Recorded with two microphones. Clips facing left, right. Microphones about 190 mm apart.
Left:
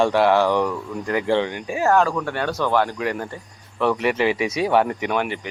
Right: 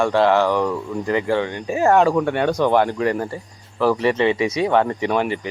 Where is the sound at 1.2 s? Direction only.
20° left (ahead or behind).